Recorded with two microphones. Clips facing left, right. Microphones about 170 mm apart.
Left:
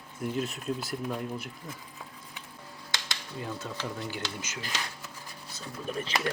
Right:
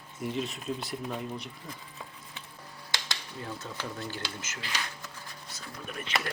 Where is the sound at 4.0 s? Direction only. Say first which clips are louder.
Left 2 dB; 15° left (ahead or behind).